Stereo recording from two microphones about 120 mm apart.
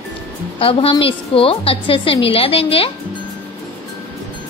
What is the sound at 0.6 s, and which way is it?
A woman's voice, 50° left (ahead or behind).